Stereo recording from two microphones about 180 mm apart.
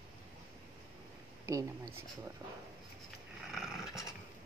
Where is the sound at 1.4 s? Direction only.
20° right (ahead or behind).